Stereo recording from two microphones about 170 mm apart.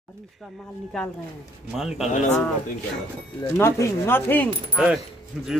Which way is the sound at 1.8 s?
Centre (ahead or behind).